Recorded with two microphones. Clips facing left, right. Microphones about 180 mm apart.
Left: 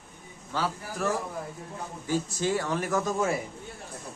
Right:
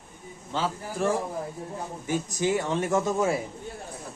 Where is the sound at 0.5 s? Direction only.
25° right (ahead or behind).